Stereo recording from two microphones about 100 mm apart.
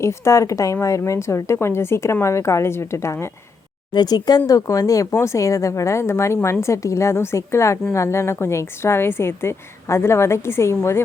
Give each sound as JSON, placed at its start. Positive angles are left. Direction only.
{"t": 0.0, "sound": "a woman's voice", "side_deg": 30}
{"t": 3.9, "sound": "a woman's voice", "side_deg": 40}